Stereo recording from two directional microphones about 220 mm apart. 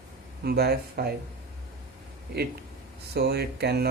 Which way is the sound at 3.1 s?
45° right (ahead or behind).